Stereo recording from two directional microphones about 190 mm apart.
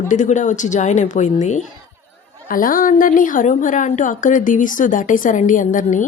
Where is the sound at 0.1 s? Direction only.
40° left (ahead or behind).